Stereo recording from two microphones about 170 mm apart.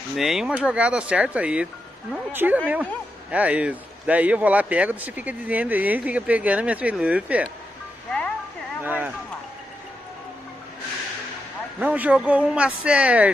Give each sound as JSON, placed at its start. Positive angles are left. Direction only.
{"t": 0.1, "sound": "speech", "side_deg": 0}
{"t": 8.8, "sound": "speech", "side_deg": -10}
{"t": 11.8, "sound": "speech", "side_deg": -10}